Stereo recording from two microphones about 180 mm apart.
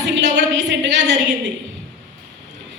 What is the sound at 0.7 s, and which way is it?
Speech, 90° right.